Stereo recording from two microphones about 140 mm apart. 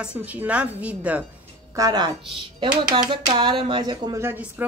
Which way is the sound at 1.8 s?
30° right (ahead or behind).